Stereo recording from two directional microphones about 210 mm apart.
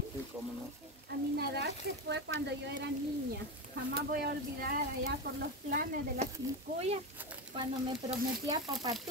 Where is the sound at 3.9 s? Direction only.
45° right (ahead or behind).